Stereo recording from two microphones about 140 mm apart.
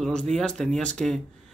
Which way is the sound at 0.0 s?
5° left (ahead or behind).